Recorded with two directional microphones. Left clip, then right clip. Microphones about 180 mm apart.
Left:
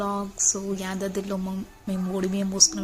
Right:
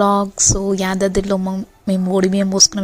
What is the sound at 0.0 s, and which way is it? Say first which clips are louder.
A woman's voice: right 12 dB; 45° right (ahead or behind).